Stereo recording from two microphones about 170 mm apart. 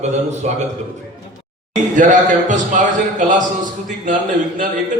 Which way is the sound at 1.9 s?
45° right (ahead or behind).